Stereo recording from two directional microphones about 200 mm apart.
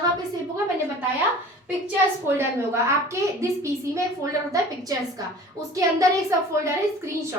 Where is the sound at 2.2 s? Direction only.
10° right (ahead or behind).